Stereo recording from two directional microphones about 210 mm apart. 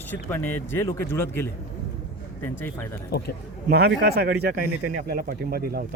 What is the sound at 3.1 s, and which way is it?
Speech, 50° left (ahead or behind).